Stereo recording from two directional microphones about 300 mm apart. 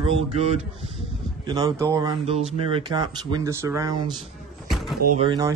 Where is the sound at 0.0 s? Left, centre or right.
Right.